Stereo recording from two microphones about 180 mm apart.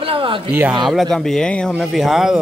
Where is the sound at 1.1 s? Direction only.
5° left (ahead or behind).